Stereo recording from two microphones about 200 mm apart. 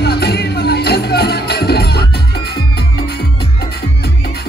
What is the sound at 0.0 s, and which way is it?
Music, 55° left (ahead or behind).